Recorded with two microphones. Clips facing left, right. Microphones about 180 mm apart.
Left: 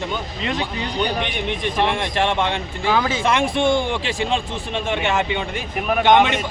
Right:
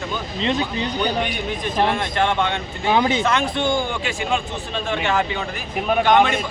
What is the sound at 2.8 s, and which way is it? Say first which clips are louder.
Speech: right 2 dB; 20° right (ahead or behind).